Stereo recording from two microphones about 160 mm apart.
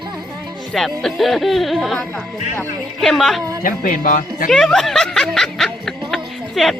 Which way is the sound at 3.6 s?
60° left (ahead or behind).